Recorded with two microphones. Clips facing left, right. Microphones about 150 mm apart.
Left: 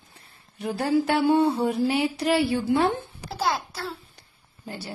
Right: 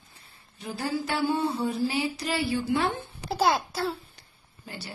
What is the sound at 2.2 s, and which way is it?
Speech, 55° left (ahead or behind).